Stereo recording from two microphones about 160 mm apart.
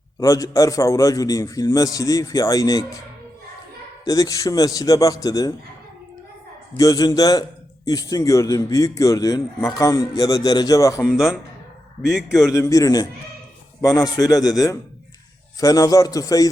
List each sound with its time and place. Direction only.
0.2 s a man's voice: 20° left (ahead or behind)
4.0 s a man's voice: 20° left (ahead or behind)
6.7 s a man's voice: 20° left (ahead or behind)
11.0 s a man's voice: 5° right (ahead or behind)
12.4 s a man's voice: 20° left (ahead or behind)